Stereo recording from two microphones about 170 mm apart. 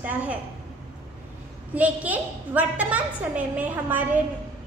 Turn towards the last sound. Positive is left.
turn(degrees=-10)  # may be behind; listen again after turning